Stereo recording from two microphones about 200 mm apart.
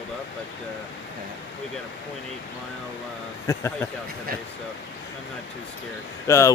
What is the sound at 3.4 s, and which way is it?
Speech, 15° left (ahead or behind).